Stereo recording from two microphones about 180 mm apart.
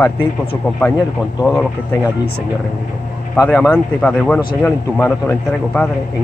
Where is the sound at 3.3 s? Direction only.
5° left (ahead or behind).